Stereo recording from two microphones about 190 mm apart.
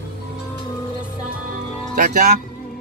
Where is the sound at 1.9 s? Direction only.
45° right (ahead or behind).